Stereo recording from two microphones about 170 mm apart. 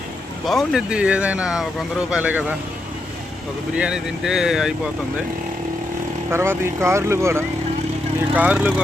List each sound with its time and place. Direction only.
0.4 s speech: centre (ahead or behind)
3.8 s speech: 5° right (ahead or behind)
6.3 s speech: 15° right (ahead or behind)